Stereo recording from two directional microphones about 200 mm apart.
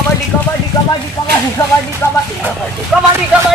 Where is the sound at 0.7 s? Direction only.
20° left (ahead or behind).